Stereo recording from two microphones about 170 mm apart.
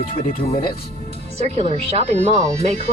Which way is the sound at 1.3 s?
40° right (ahead or behind).